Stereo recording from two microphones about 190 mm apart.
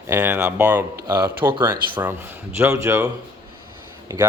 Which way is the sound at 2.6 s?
15° right (ahead or behind).